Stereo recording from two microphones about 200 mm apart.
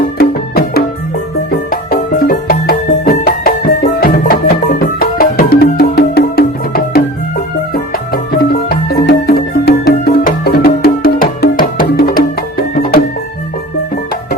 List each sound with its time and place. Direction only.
0.2 s music: 50° left (ahead or behind)